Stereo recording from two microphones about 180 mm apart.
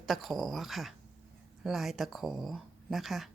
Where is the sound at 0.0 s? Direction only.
Centre (ahead or behind).